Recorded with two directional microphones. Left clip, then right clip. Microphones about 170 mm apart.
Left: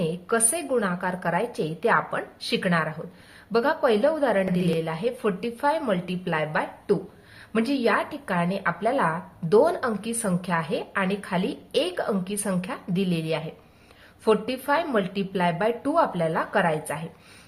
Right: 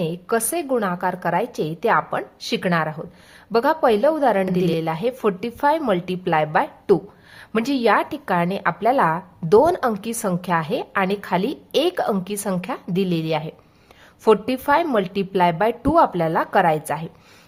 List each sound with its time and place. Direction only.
0.0 s a woman's voice: 40° right (ahead or behind)